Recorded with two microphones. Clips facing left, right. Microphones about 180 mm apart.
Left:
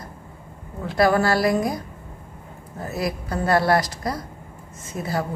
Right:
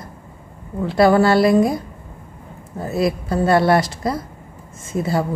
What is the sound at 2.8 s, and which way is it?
A woman's voice, 25° right (ahead or behind).